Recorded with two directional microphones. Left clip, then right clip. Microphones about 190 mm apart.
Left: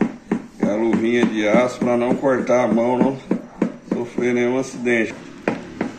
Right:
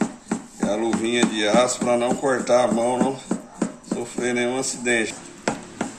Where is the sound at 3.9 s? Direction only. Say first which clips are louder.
Left 4 dB; 25° right (ahead or behind).